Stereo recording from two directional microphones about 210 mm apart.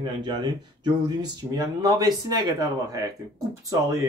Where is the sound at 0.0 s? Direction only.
20° right (ahead or behind).